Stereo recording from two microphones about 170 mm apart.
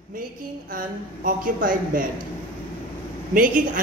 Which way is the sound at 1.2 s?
55° right (ahead or behind).